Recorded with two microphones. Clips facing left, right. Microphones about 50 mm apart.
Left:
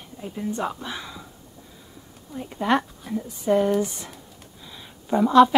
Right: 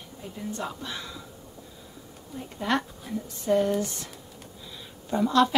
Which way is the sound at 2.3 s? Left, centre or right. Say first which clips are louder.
Left 5 dB; centre.